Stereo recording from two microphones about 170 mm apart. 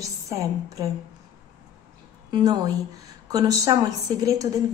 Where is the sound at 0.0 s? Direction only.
20° right (ahead or behind).